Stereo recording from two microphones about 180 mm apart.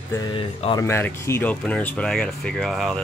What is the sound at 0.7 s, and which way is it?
Speech, 15° left (ahead or behind).